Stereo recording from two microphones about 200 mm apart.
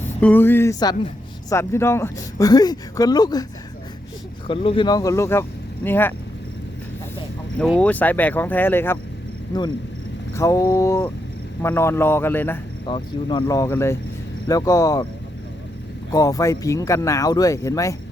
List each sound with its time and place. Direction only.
0.2 s speech: 10° left (ahead or behind)
4.4 s speech: 25° left (ahead or behind); by 6.1 s 10° left (ahead or behind)
7.6 s speech: 5° left (ahead or behind)
10.3 s speech: 15° left (ahead or behind)
12.8 s speech: 25° left (ahead or behind)
16.1 s speech: 15° left (ahead or behind)